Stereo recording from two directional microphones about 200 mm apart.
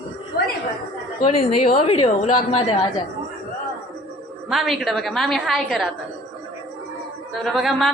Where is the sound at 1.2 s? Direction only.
35° left (ahead or behind).